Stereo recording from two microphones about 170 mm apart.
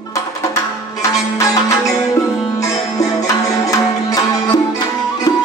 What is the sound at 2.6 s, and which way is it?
Music, 20° left (ahead or behind).